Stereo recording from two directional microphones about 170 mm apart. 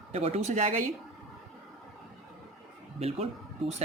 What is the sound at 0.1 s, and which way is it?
Speech, 40° right (ahead or behind).